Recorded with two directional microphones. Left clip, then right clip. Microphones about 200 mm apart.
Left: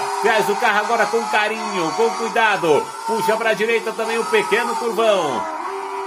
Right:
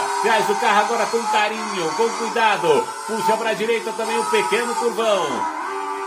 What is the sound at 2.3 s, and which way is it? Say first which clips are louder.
Speech: even; 55° left (ahead or behind).